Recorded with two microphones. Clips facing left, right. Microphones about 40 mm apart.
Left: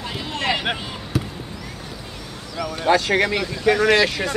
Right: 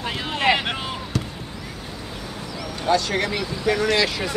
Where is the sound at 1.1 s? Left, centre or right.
Centre.